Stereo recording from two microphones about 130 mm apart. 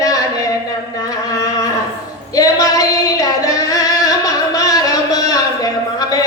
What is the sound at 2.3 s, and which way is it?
Female singing, 25° left (ahead or behind).